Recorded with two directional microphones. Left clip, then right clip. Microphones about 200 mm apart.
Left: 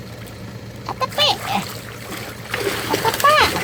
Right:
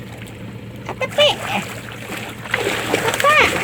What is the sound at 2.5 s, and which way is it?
Splash, 15° left (ahead or behind).